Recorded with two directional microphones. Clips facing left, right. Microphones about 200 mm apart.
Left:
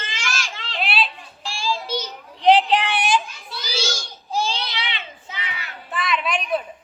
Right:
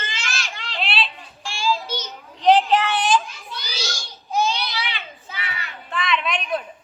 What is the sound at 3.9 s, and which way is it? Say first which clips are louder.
Child singing: right 2 dB; 30° left (ahead or behind).